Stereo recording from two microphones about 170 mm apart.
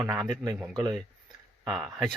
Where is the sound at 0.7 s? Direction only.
25° right (ahead or behind).